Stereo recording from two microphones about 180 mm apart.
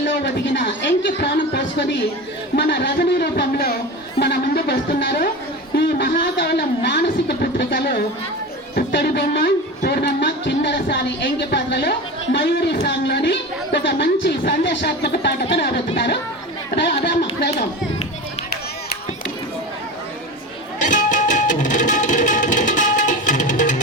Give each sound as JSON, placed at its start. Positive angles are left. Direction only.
{"t": 0.5, "sound": "speech", "side_deg": 75}
{"t": 4.2, "sound": "a sound", "side_deg": 65}
{"t": 8.7, "sound": "speech", "side_deg": 70}
{"t": 20.8, "sound": "music", "side_deg": 45}